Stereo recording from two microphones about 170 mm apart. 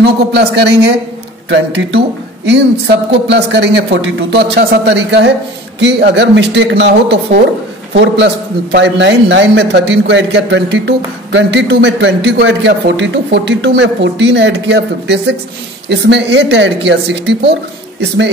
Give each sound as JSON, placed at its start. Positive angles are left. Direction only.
{"t": 0.0, "sound": "a man's voice", "side_deg": -80}